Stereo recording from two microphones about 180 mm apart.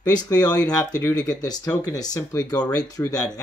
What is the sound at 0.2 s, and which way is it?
Speech, 20° left (ahead or behind).